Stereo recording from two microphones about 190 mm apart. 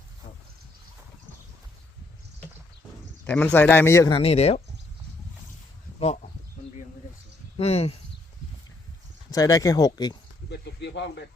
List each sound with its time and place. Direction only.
3.2 s a man's voice: 5° left (ahead or behind)
4.1 s speech: 30° left (ahead or behind)
6.6 s a sound: 45° left (ahead or behind)
7.5 s speech: 35° left (ahead or behind)
9.3 s speech: 20° left (ahead or behind)
10.5 s speech: 65° left (ahead or behind)